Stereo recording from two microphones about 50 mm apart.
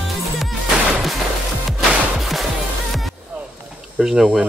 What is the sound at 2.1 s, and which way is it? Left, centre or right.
Music, centre.